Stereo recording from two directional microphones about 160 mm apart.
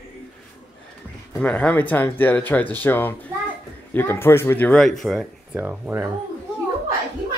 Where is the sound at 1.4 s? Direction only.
10° left (ahead or behind).